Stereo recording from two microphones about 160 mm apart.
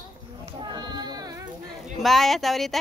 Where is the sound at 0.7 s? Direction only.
25° right (ahead or behind).